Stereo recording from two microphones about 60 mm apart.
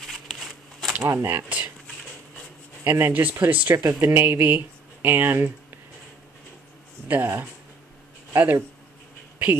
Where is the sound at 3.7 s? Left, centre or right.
Right.